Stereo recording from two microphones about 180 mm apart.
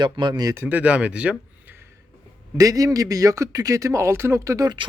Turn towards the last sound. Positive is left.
turn(degrees=-25)  # may be behind; listen again after turning